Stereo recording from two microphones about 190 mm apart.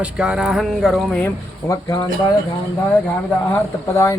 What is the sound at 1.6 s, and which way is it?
Speech, 15° left (ahead or behind).